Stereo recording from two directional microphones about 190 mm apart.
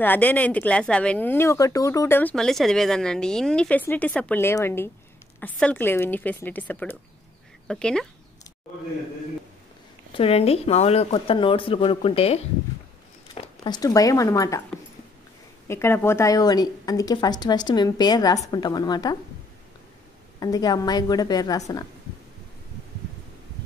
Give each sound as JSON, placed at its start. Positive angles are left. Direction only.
{"t": 0.0, "sound": "speech", "side_deg": 10}
{"t": 10.1, "sound": "a woman's voice", "side_deg": 30}
{"t": 13.3, "sound": "speech", "side_deg": 20}
{"t": 15.7, "sound": "a woman's voice", "side_deg": 15}
{"t": 20.3, "sound": "a woman's voice", "side_deg": 20}